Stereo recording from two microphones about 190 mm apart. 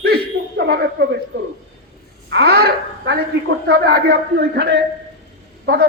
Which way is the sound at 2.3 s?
60° right (ahead or behind).